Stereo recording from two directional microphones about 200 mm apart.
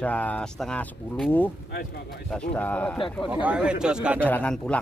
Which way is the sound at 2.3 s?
5° left (ahead or behind).